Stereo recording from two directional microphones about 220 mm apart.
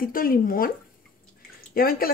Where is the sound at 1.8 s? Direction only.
45° left (ahead or behind).